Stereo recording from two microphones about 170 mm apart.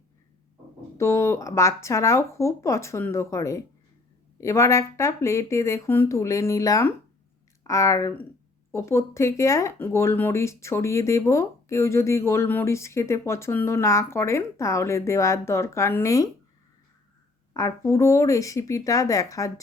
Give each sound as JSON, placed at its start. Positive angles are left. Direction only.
{"t": 0.9, "sound": "speech", "side_deg": 15}
{"t": 17.5, "sound": "speech", "side_deg": 20}